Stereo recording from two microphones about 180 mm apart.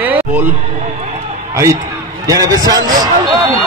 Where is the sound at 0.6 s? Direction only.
35° right (ahead or behind).